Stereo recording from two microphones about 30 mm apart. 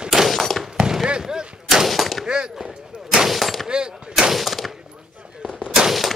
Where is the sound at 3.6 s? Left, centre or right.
Right.